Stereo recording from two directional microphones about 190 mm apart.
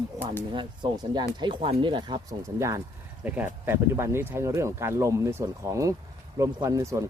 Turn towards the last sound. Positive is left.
turn(degrees=-15)  # may be behind; listen again after turning